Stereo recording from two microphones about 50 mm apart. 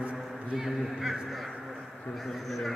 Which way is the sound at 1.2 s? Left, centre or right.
Centre.